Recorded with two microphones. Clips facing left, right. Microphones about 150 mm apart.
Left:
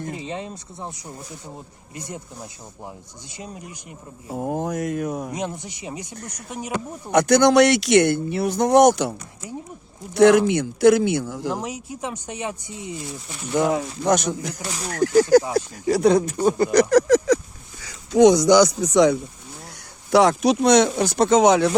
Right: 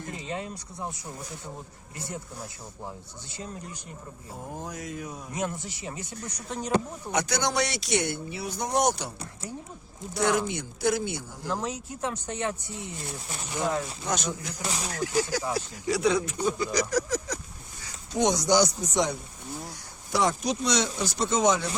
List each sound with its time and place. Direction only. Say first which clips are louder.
0.1 s speech: left 4 dB; 20° left (ahead or behind)
3.3 s speech: left 2 dB; 15° left (ahead or behind)
4.4 s a sound: left 13 dB; 75° left (ahead or behind)
5.3 s speech: left 3 dB; 20° left (ahead or behind)
7.1 s speech: left 13 dB; 75° left (ahead or behind)
10.2 s speech: left 12 dB; 75° left (ahead or behind)
11.5 s speech: left 2 dB; 10° left (ahead or behind)
13.6 s speech: left 8 dB; 65° left (ahead or behind)
14.8 s speech: left 12 dB; 50° left (ahead or behind)
16.9 s a sound: left 13 dB; 85° left
18.1 s speech: left 10 dB; 90° left
20.1 s speech: left 10 dB; 75° left (ahead or behind)